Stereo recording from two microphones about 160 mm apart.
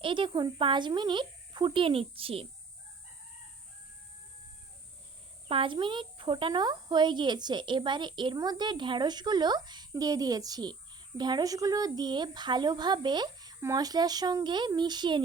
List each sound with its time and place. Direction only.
0.0 s speech: 30° right (ahead or behind)
5.5 s speech: 30° right (ahead or behind)